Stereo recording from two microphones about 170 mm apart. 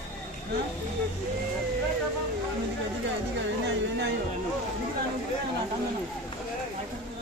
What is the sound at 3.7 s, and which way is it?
Music, 90° right.